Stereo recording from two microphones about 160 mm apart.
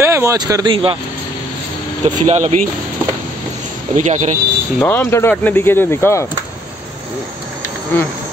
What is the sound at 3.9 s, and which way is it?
Speech, 50° right (ahead or behind).